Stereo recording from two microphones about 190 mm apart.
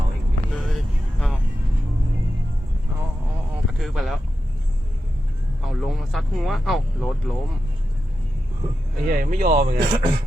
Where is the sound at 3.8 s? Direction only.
Centre (ahead or behind).